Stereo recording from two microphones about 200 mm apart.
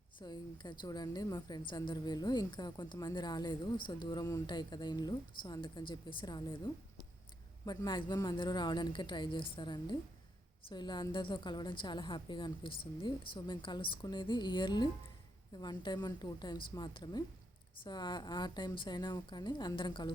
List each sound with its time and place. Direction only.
0.2 s a woman's voice: 20° left (ahead or behind)
7.6 s a woman's voice: 20° left (ahead or behind)